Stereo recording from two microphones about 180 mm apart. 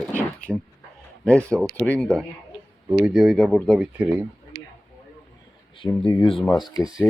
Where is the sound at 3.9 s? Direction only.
10° right (ahead or behind).